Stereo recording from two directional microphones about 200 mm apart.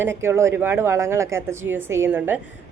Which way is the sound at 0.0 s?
10° right (ahead or behind).